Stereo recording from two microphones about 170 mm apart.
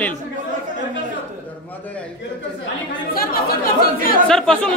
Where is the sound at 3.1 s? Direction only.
60° left (ahead or behind).